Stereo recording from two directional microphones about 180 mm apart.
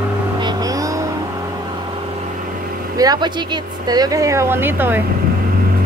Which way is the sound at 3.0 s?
20° right (ahead or behind).